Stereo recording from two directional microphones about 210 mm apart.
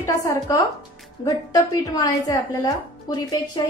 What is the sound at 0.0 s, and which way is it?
A woman's voice, 15° left (ahead or behind).